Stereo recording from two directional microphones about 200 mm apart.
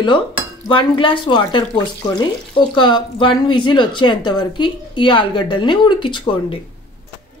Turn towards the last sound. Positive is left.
turn(degrees=25)  # may be behind; listen again after turning